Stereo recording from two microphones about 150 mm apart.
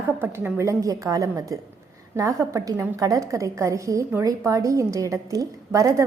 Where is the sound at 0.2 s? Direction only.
15° right (ahead or behind).